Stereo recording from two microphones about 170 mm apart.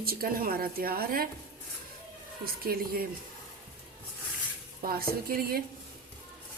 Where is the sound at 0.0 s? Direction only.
60° right (ahead or behind).